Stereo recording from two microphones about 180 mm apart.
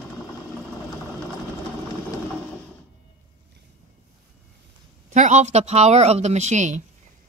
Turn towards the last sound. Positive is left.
turn(degrees=-40)  # may be behind; listen again after turning